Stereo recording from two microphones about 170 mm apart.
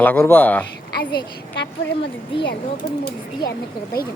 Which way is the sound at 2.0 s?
30° left (ahead or behind).